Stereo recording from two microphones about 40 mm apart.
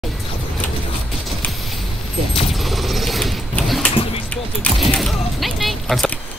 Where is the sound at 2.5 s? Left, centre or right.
Centre.